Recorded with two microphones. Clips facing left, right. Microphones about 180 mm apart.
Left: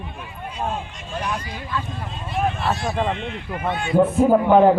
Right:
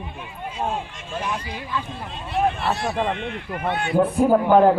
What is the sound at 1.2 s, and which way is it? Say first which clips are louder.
Speech: left 1 dB; 10° right (ahead or behind).